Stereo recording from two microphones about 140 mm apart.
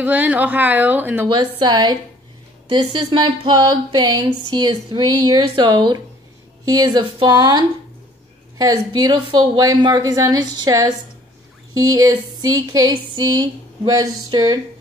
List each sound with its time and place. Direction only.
0.0 s a woman's voice: 10° right (ahead or behind)
1.3 s speech: 30° right (ahead or behind)